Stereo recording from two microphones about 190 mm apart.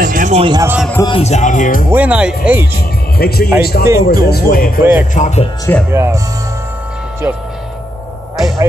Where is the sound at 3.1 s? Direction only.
55° left (ahead or behind).